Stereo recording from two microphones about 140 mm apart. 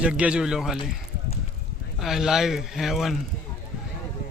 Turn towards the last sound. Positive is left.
turn(degrees=0)  # may be behind; listen again after turning